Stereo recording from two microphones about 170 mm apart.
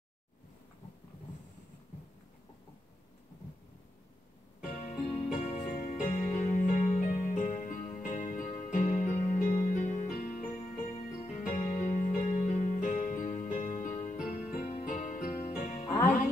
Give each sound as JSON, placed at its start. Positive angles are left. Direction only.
{"t": 4.7, "sound": "music", "side_deg": 45}